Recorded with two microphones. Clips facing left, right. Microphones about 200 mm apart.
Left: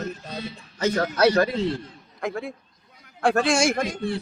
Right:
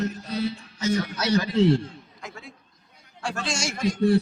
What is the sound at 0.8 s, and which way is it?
A man's voice, 60° left (ahead or behind).